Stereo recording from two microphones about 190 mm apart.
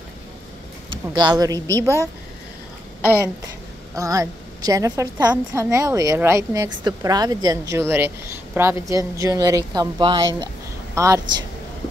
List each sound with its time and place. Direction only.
0.8 s speech: 25° right (ahead or behind)
3.9 s a woman's voice: 15° right (ahead or behind)